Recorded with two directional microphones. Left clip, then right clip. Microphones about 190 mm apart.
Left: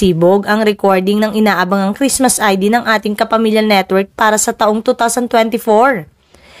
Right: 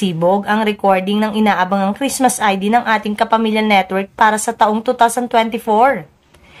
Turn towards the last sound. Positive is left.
turn(degrees=40)  # may be behind; listen again after turning